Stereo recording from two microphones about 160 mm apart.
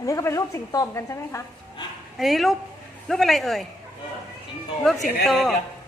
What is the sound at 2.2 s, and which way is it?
Speech, centre (ahead or behind).